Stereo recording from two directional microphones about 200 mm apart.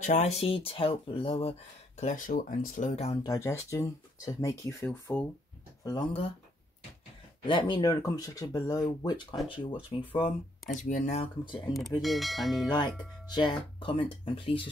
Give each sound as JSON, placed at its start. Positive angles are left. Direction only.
{"t": 0.0, "sound": "speech", "side_deg": 35}
{"t": 3.3, "sound": "speech", "side_deg": 15}
{"t": 5.9, "sound": "speech", "side_deg": 25}
{"t": 7.4, "sound": "speech", "side_deg": 25}
{"t": 10.8, "sound": "speech", "side_deg": 40}
{"t": 12.0, "sound": "speech", "side_deg": 0}
{"t": 12.6, "sound": "speech", "side_deg": 20}